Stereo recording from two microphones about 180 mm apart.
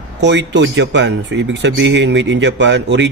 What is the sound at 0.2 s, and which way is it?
Speech, 80° right.